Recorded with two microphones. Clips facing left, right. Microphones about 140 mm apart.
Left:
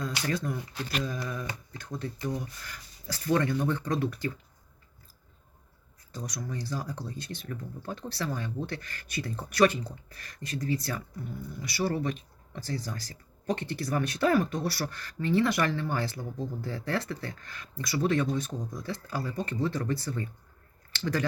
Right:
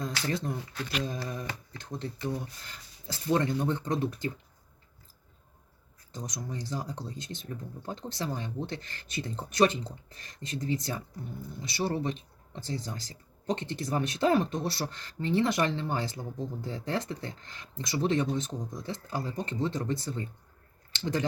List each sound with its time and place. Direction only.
0.0 s speech: 25° right (ahead or behind)
6.1 s speech: 20° right (ahead or behind)